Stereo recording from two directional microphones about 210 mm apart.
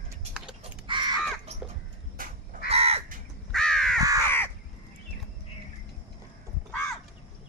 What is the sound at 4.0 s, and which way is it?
Crow, 15° right (ahead or behind).